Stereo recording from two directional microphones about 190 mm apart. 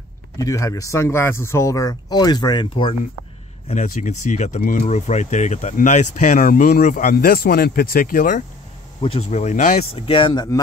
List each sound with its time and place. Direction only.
0.4 s speech: 15° left (ahead or behind)
3.6 s speech: 40° left (ahead or behind)
9.0 s speech: 35° left (ahead or behind)
9.9 s speech: 30° left (ahead or behind)